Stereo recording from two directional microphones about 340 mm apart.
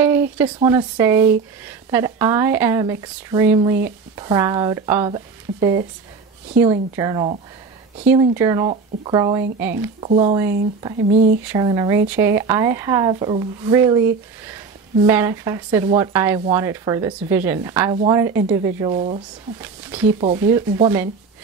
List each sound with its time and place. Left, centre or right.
0.4 s speech: centre
10.0 s speech: centre
19.6 s speech: centre